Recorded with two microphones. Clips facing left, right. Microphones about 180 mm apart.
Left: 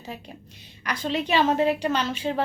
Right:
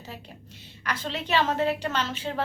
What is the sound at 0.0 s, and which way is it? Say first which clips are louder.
A woman's voice: left 4 dB; 15° left (ahead or behind).